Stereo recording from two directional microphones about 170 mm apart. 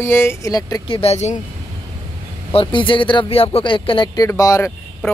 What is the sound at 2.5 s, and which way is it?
Speech, 30° left (ahead or behind).